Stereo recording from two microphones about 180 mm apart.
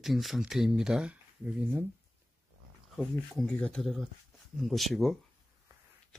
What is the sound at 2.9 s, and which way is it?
Speech, centre (ahead or behind).